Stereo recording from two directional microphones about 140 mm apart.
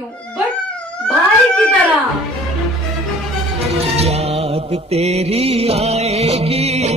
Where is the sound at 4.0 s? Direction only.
45° right (ahead or behind).